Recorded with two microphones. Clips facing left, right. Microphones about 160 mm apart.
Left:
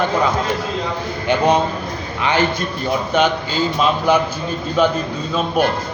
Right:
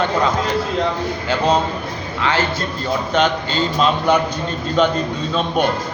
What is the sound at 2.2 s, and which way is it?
Speech, 15° left (ahead or behind).